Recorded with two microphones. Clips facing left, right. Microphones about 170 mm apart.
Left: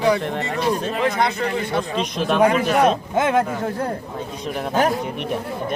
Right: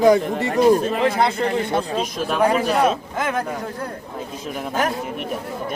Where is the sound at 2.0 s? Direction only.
5° right (ahead or behind).